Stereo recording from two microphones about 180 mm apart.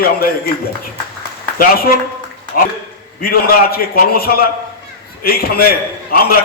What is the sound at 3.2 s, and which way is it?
A man's voice, 55° left (ahead or behind).